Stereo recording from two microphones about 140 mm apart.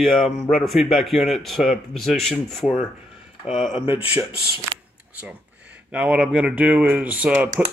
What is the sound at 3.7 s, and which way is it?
Speech, 15° right (ahead or behind).